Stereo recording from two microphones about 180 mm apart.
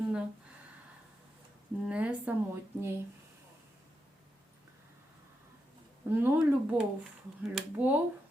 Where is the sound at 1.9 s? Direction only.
5° right (ahead or behind).